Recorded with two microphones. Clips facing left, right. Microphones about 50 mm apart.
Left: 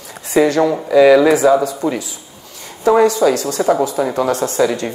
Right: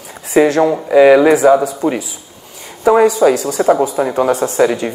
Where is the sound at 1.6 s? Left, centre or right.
Centre.